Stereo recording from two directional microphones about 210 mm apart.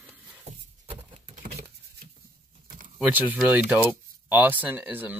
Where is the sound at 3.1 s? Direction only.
10° right (ahead or behind).